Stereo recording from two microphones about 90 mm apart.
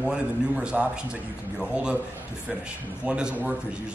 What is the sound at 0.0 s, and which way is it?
A man's voice, 10° right (ahead or behind).